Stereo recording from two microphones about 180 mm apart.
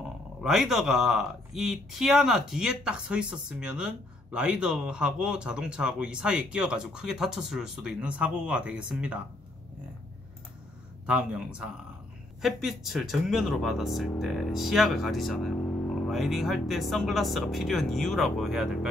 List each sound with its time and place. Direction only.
0.4 s speech: centre (ahead or behind)
11.1 s speech: 5° right (ahead or behind)